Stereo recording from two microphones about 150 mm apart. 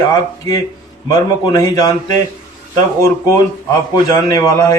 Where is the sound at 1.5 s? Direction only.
25° left (ahead or behind).